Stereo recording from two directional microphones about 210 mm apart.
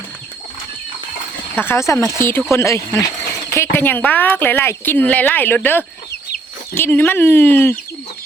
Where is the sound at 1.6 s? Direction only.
10° left (ahead or behind).